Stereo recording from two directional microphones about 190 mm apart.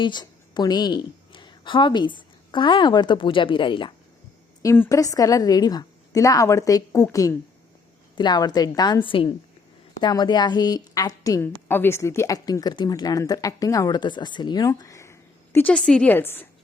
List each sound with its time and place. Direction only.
0.0 s a woman's voice: 25° left (ahead or behind)
4.6 s a woman's voice: 15° left (ahead or behind)